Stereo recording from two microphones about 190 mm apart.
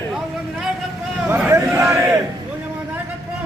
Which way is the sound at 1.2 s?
10° right (ahead or behind).